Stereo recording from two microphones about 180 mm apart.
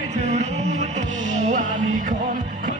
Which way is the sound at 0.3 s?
40° right (ahead or behind).